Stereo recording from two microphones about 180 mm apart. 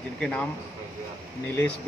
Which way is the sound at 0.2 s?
5° left (ahead or behind).